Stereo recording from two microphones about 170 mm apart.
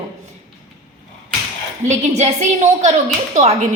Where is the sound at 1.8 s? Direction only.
45° right (ahead or behind).